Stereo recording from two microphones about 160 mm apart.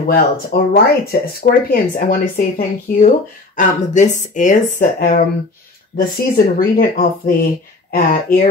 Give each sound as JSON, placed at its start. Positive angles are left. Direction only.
{"t": 0.0, "sound": "speech", "side_deg": 70}